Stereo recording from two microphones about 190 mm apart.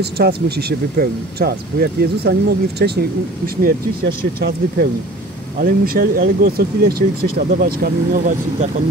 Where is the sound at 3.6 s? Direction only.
50° right (ahead or behind).